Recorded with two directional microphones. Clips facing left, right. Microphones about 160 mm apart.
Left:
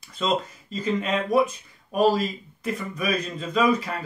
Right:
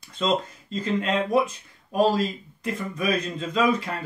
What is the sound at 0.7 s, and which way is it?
Speech, centre (ahead or behind).